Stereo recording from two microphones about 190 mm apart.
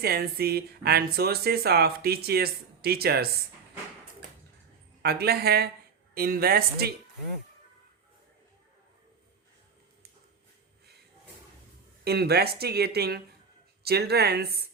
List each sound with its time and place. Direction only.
0.0 s speech: 55° right (ahead or behind)
5.0 s speech: 55° right (ahead or behind)
12.0 s speech: 55° right (ahead or behind)